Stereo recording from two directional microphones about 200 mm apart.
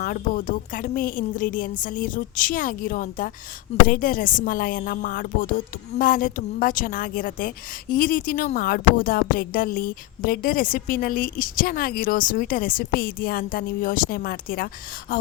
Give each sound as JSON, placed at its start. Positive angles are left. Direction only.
{"t": 0.0, "sound": "speech", "side_deg": 45}